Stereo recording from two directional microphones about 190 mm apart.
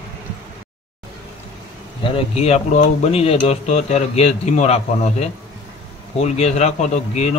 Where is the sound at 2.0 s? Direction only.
30° left (ahead or behind).